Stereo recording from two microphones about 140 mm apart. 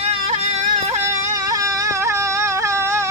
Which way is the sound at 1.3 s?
25° right (ahead or behind).